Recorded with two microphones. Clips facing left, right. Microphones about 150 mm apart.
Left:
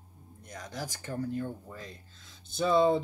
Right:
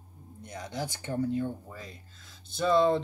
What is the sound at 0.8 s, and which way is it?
Speech, 25° right (ahead or behind).